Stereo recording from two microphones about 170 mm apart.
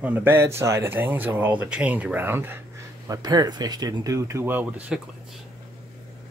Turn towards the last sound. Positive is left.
turn(degrees=-10)  # may be behind; listen again after turning